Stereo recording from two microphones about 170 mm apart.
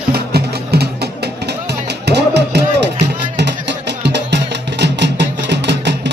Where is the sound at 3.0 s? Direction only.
90° right.